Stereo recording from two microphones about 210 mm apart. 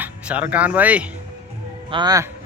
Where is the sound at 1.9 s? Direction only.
20° right (ahead or behind).